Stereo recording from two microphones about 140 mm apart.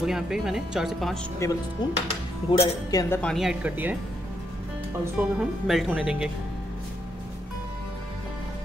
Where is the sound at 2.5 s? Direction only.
35° left (ahead or behind).